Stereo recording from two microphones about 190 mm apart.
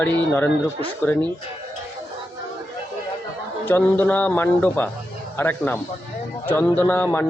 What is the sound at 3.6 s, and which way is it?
A man's voice, 10° left (ahead or behind).